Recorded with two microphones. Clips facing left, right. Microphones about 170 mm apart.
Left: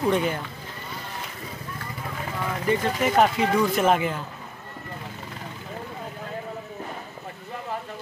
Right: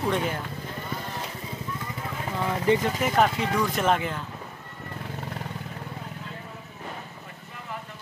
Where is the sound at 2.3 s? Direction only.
25° right (ahead or behind).